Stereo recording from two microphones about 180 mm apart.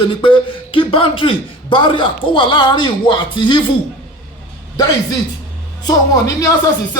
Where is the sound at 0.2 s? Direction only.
30° left (ahead or behind).